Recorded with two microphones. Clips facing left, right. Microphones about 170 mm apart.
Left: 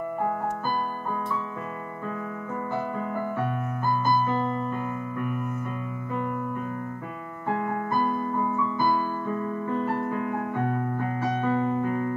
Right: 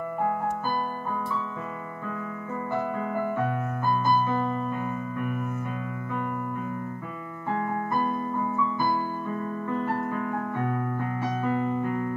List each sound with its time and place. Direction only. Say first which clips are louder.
3.9 s keyboard: even; 15° right (ahead or behind)
11.4 s keyboard: left 1 dB; 35° left (ahead or behind)